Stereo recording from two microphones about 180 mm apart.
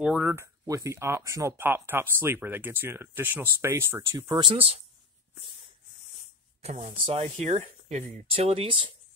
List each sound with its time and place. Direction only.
0.0 s speech: 5° right (ahead or behind)
4.3 s speech: 30° right (ahead or behind)
6.6 s speech: 35° right (ahead or behind)